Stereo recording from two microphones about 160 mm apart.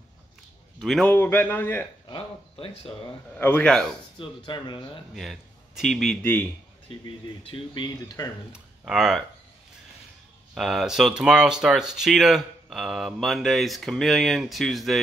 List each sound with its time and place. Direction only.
0.7 s a man's voice: centre (ahead or behind)
2.0 s speech: 30° left (ahead or behind)
3.3 s a man's voice: 10° left (ahead or behind)
4.5 s speech: 30° left (ahead or behind)
5.1 s speech: centre (ahead or behind)
7.4 s speech: 30° left (ahead or behind)
8.5 s speech: 5° right (ahead or behind)
10.5 s speech: centre (ahead or behind)